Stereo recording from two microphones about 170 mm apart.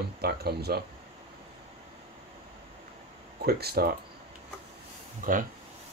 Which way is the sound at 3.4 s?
65° right (ahead or behind).